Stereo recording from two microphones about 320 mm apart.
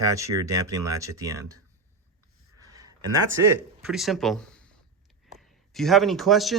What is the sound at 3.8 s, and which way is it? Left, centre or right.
Speech, centre.